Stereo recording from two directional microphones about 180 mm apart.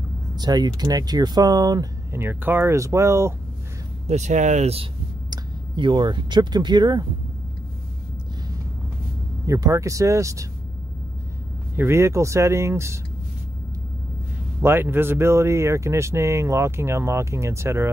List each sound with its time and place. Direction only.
0.4 s speech: 20° right (ahead or behind)
4.1 s speech: 40° right (ahead or behind)
5.3 s speech: 25° right (ahead or behind)
9.5 s speech: 20° right (ahead or behind)
11.7 s speech: 15° right (ahead or behind)
14.6 s speech: 10° right (ahead or behind)